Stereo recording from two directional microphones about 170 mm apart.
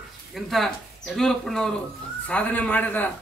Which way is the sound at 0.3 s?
Centre (ahead or behind).